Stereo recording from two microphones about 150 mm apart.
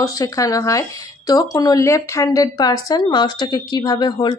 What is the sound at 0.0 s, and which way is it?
Speech, 25° left (ahead or behind).